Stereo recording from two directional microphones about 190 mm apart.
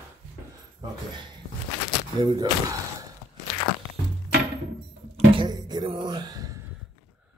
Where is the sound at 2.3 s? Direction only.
20° right (ahead or behind).